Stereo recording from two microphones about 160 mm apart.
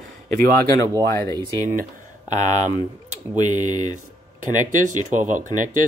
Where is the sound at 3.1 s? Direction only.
50° right (ahead or behind).